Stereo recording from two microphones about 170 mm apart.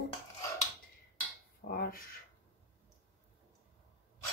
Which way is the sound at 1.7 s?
60° left (ahead or behind).